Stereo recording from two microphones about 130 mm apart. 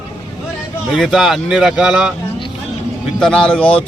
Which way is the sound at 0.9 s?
Centre (ahead or behind).